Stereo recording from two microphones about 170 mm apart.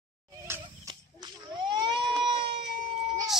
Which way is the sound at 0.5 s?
20° right (ahead or behind).